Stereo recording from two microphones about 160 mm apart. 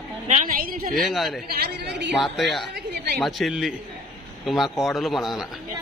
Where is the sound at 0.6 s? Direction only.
65° right (ahead or behind).